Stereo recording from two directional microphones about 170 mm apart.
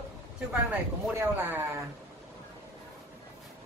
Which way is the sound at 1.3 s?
10° right (ahead or behind).